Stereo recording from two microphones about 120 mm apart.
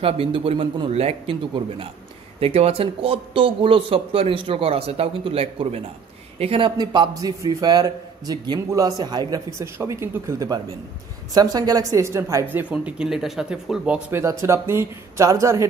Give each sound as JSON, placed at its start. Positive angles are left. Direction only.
{"t": 0.0, "sound": "speech", "side_deg": -50}
{"t": 6.8, "sound": "a man's voice", "side_deg": -35}
{"t": 9.6, "sound": "a woman's voice", "side_deg": -25}
{"t": 14.4, "sound": "a woman's voice", "side_deg": -20}